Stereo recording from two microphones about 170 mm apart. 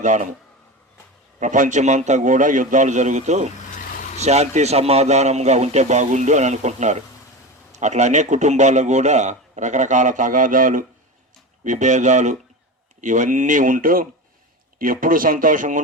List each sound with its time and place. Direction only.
0.0 s a man's voice: 45° right (ahead or behind)
1.4 s a man's voice: 50° right (ahead or behind)